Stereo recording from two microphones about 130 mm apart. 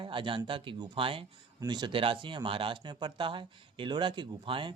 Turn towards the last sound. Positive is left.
turn(degrees=-40)  # may be behind; listen again after turning